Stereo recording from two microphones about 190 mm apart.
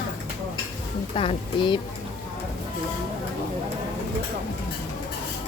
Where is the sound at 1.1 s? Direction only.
30° left (ahead or behind).